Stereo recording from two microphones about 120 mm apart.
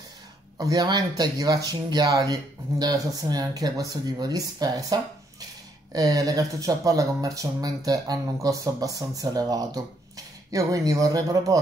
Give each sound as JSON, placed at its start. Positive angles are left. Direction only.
{"t": 0.6, "sound": "speech", "side_deg": -30}